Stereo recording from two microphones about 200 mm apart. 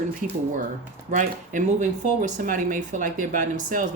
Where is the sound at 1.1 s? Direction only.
40° right (ahead or behind).